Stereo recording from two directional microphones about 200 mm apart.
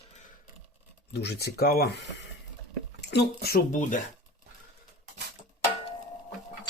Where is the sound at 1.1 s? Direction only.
55° left (ahead or behind); by 4.0 s 40° left (ahead or behind).